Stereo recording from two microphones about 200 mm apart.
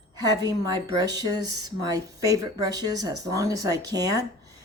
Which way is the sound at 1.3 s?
20° right (ahead or behind).